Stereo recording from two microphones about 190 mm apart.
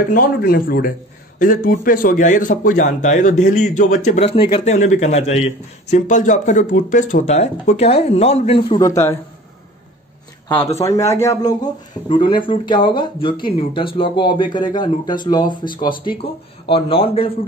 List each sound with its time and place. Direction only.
0.1 s a man's voice: 50° left (ahead or behind); by 9.2 s 15° left (ahead or behind)
10.8 s a man's voice: 15° left (ahead or behind)